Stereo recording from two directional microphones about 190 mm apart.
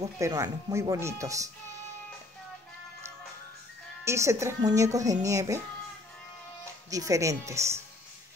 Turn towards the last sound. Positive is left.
turn(degrees=-15)  # may be behind; listen again after turning